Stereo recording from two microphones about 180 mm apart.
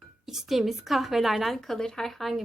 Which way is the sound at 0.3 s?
Centre (ahead or behind).